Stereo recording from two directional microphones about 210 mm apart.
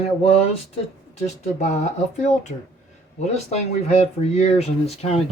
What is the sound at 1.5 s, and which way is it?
Speech, 35° left (ahead or behind).